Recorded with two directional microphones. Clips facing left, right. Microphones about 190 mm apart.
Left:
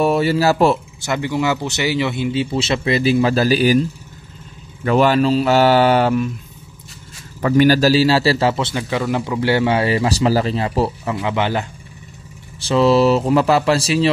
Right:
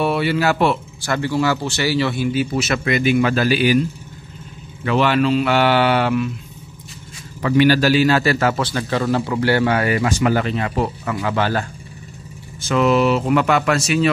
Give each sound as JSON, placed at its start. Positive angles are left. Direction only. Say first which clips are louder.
{"t": 0.0, "sound": "speech", "louder": "left 3 dB", "side_deg": 40}
{"t": 1.0, "sound": "a man's voice", "louder": "even", "side_deg": 15}
{"t": 4.8, "sound": "speech", "louder": "left 2 dB", "side_deg": 40}
{"t": 7.4, "sound": "a man's voice", "louder": "left 2 dB", "side_deg": 40}
{"t": 11.2, "sound": "a man's voice", "louder": "even", "side_deg": 20}
{"t": 12.6, "sound": "speech", "louder": "left 3 dB", "side_deg": 30}